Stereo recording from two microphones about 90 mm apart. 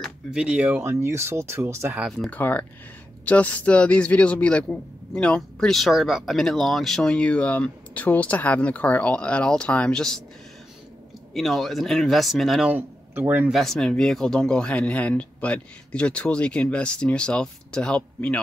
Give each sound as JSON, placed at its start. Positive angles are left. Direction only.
{"t": 0.0, "sound": "speech", "side_deg": -10}
{"t": 0.7, "sound": "speech", "side_deg": -30}
{"t": 2.0, "sound": "speech", "side_deg": 5}
{"t": 2.3, "sound": "a man's voice", "side_deg": 20}
{"t": 11.3, "sound": "a man's voice", "side_deg": 0}